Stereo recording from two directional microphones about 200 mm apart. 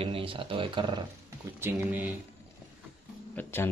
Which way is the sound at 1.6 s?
10° right (ahead or behind).